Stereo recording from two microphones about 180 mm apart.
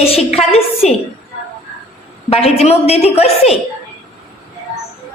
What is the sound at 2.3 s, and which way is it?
A woman's voice, 35° left (ahead or behind).